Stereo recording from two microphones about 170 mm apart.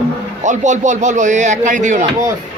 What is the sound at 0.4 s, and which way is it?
A man's voice, 45° right (ahead or behind).